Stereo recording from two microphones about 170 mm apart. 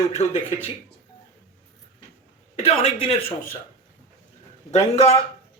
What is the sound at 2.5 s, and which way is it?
Speech, 35° left (ahead or behind).